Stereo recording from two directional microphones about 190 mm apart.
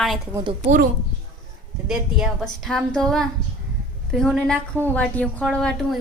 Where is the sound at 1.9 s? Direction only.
Centre (ahead or behind).